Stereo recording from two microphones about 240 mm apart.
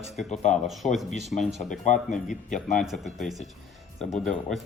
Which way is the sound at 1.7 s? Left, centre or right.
Left.